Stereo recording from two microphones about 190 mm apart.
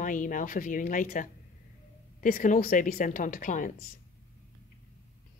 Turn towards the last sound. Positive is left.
turn(degrees=45)  # may be behind; listen again after turning